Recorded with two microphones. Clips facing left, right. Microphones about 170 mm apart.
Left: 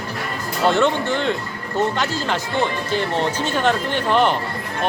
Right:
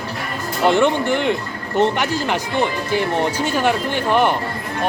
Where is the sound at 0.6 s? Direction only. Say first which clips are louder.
Right 2 dB; 15° right (ahead or behind).